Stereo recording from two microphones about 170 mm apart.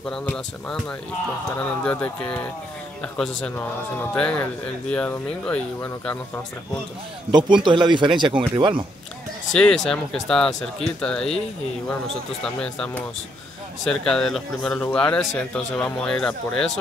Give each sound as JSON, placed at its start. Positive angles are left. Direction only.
{"t": 0.1, "sound": "a man's voice", "side_deg": 5}
{"t": 7.2, "sound": "speech", "side_deg": -25}
{"t": 9.5, "sound": "a man's voice", "side_deg": 5}
{"t": 12.4, "sound": "a man's voice", "side_deg": 5}